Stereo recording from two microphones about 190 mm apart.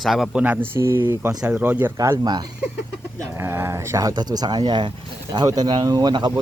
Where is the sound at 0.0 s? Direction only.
Centre (ahead or behind).